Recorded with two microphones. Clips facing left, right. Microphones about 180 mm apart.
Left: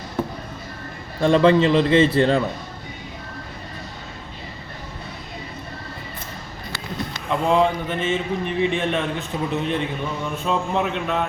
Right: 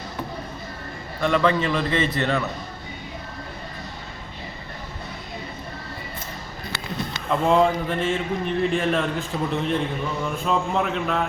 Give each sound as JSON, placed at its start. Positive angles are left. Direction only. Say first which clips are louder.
{"t": 1.2, "sound": "a man's voice", "louder": "left 6 dB", "side_deg": 25}
{"t": 7.3, "sound": "speech", "louder": "even", "side_deg": 0}